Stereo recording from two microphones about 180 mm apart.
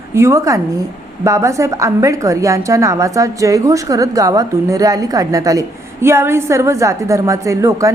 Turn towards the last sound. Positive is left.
turn(degrees=-20)  # may be behind; listen again after turning